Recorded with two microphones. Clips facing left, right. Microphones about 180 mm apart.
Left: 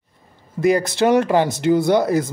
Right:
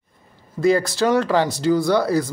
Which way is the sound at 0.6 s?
20° left (ahead or behind).